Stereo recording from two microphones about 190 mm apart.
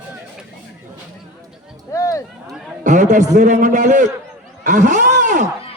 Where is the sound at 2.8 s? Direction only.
40° right (ahead or behind).